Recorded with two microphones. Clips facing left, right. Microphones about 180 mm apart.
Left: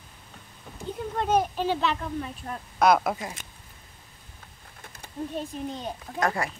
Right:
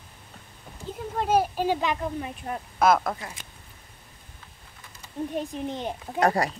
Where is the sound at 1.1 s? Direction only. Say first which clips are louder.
Right 1 dB; 5° right (ahead or behind).